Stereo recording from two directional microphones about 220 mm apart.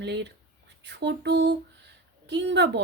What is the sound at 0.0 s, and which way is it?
Speech, 50° right (ahead or behind).